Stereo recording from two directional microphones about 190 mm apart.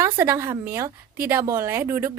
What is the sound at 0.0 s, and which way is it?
A woman's voice, 15° right (ahead or behind).